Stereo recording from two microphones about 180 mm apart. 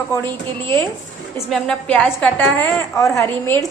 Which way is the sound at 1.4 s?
5° left (ahead or behind).